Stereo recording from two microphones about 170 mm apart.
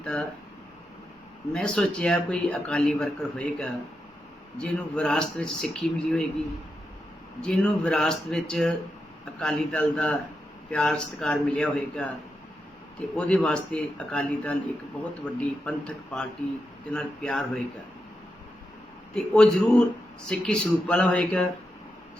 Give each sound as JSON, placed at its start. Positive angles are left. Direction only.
{"t": 0.0, "sound": "speech", "side_deg": 5}
{"t": 1.5, "sound": "a man's voice", "side_deg": 5}
{"t": 7.4, "sound": "a man's voice", "side_deg": 5}
{"t": 13.1, "sound": "a man's voice", "side_deg": 5}
{"t": 19.1, "sound": "a man's voice", "side_deg": 5}